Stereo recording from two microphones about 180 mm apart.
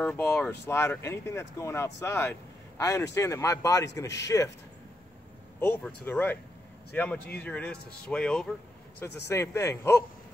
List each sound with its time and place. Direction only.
0.0 s a man's voice: 10° left (ahead or behind)
6.0 s speech: 10° left (ahead or behind)
9.3 s speech: 15° left (ahead or behind)